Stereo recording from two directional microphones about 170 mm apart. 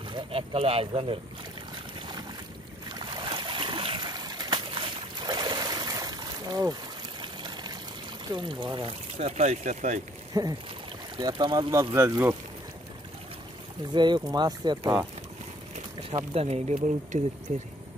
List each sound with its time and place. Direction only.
0.1 s speech: 30° right (ahead or behind)
2.0 s boat: 25° right (ahead or behind)
8.3 s speech: 30° right (ahead or behind)
9.2 s speech: 40° right (ahead or behind)
10.3 s speech: 20° right (ahead or behind)
13.9 s speech: 25° right (ahead or behind)
16.2 s speech: 35° right (ahead or behind)